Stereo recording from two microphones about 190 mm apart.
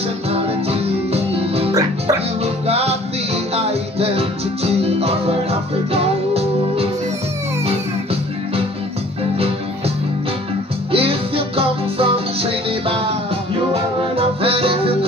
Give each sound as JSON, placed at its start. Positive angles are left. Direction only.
{"t": 0.3, "sound": "music", "side_deg": -30}
{"t": 1.7, "sound": "music", "side_deg": -15}
{"t": 2.4, "sound": "music", "side_deg": -30}
{"t": 10.9, "sound": "music", "side_deg": -30}
{"t": 14.1, "sound": "music", "side_deg": -30}